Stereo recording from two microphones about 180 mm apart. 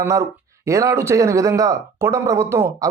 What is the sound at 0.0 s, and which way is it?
Speech, 15° right (ahead or behind).